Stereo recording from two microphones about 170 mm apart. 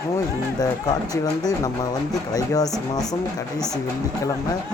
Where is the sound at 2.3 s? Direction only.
20° left (ahead or behind).